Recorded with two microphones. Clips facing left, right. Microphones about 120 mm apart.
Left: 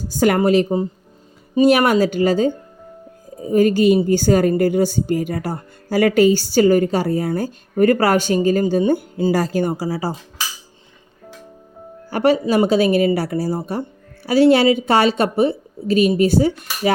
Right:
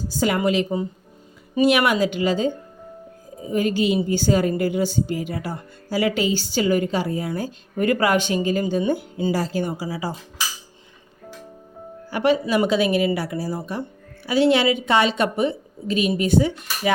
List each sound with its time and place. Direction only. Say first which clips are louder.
0.2 s a woman's voice: left 6 dB; 50° left (ahead or behind)
3.5 s a woman's voice: left 7 dB; 45° left (ahead or behind)
9.3 s speech: left 5 dB; 55° left (ahead or behind)
9.7 s a woman's voice: left 5 dB; 35° left (ahead or behind)
12.1 s a woman's voice: left 4 dB; 40° left (ahead or behind)